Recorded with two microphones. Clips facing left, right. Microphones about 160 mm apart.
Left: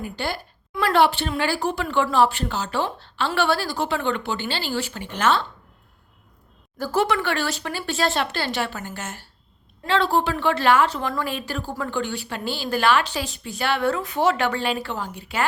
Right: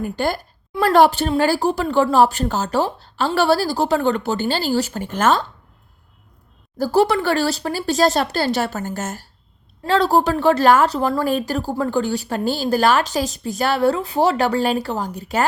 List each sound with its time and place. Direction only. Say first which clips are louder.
0.0 s a woman's voice: right 7 dB; 45° right (ahead or behind)
6.7 s a woman's voice: right 5 dB; 35° right (ahead or behind)